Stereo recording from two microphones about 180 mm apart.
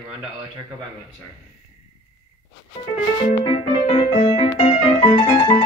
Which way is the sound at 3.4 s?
30° left (ahead or behind).